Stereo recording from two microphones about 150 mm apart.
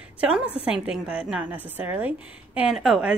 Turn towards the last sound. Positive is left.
turn(degrees=-5)  # may be behind; listen again after turning